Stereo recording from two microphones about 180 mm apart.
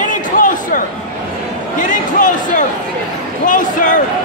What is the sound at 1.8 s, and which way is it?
Speech, 45° left (ahead or behind).